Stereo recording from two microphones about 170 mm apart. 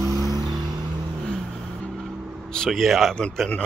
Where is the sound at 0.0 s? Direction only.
20° right (ahead or behind).